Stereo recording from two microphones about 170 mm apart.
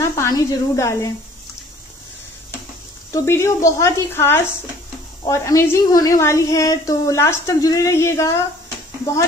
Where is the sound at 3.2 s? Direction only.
15° left (ahead or behind).